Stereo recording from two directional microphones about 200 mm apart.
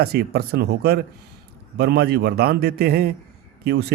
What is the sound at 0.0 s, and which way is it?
A man's voice, 55° right (ahead or behind).